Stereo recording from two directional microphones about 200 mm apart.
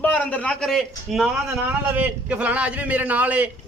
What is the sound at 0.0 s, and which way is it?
A man's voice, 5° left (ahead or behind).